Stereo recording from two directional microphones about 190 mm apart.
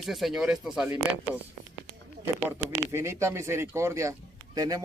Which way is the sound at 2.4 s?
10° right (ahead or behind).